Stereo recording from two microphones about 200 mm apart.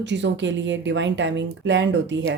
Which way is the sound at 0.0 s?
60° right (ahead or behind).